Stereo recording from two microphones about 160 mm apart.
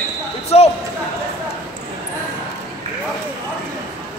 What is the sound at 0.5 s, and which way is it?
Speech, 40° left (ahead or behind).